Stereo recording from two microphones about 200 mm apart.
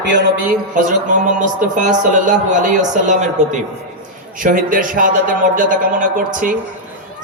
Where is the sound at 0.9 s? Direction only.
40° right (ahead or behind).